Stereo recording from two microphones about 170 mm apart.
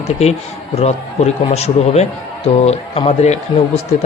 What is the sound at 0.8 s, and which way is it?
A man's voice, 40° left (ahead or behind).